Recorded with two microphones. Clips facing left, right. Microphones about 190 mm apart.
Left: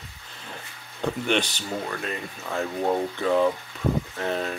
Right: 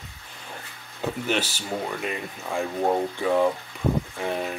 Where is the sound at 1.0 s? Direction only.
5° right (ahead or behind).